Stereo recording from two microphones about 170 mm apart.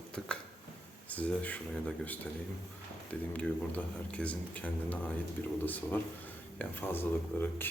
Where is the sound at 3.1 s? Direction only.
10° left (ahead or behind).